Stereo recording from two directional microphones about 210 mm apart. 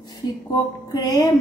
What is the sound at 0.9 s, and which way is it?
Music, 20° left (ahead or behind).